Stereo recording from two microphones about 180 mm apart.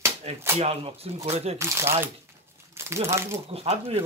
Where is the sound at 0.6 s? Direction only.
35° right (ahead or behind).